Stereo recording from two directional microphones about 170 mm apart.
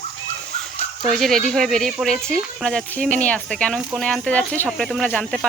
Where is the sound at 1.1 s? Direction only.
Centre (ahead or behind).